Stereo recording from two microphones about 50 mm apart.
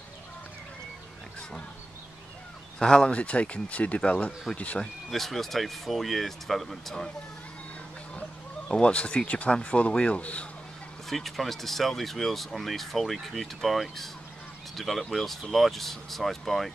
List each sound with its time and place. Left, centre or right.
2.8 s speech: centre
5.1 s speech: centre
8.2 s speech: centre
11.1 s speech: centre